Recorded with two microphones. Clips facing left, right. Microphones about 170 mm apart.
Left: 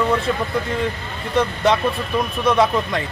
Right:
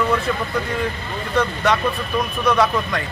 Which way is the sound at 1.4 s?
25° left (ahead or behind).